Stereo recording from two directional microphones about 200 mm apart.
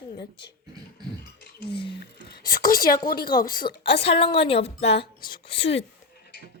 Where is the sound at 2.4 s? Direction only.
45° left (ahead or behind).